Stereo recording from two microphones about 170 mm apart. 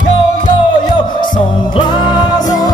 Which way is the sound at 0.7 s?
25° left (ahead or behind).